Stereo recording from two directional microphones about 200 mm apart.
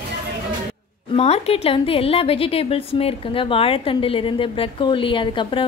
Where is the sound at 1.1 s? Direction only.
30° left (ahead or behind).